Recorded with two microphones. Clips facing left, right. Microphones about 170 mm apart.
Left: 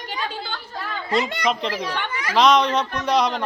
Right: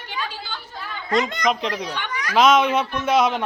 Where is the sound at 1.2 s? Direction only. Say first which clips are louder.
Right 1 dB; centre (ahead or behind).